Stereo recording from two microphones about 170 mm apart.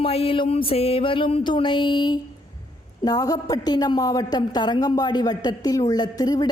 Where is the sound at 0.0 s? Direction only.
35° left (ahead or behind).